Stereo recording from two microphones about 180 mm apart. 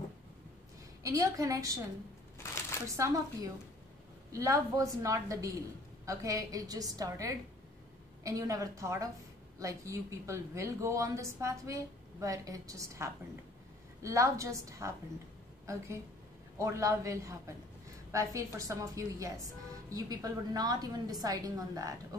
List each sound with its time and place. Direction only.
1.0 s a woman's voice: 20° right (ahead or behind)
3.0 s a woman's voice: 20° right (ahead or behind)